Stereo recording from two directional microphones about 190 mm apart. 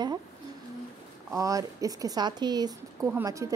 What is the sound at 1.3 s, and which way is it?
A woman's voice, 15° right (ahead or behind).